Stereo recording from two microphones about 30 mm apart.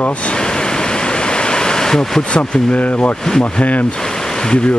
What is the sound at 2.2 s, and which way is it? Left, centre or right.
Speech, left.